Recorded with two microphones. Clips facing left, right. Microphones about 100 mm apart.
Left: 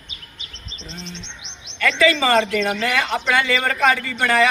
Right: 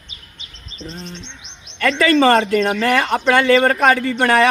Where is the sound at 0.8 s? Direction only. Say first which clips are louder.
Right 4 dB; 50° right (ahead or behind).